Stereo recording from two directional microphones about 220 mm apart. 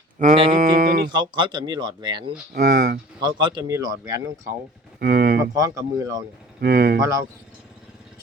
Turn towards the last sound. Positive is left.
turn(degrees=-15)  # may be behind; listen again after turning